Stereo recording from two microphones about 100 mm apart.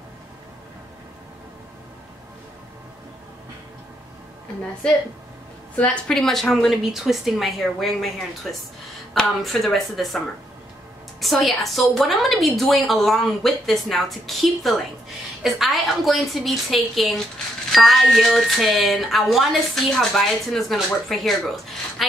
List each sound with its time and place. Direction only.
5.8 s a woman's voice: 15° left (ahead or behind)
6.1 s speech: centre (ahead or behind)